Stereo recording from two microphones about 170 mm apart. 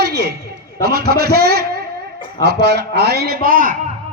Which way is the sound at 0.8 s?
65° right (ahead or behind).